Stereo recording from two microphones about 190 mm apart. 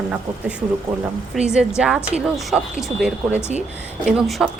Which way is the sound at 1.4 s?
5° right (ahead or behind).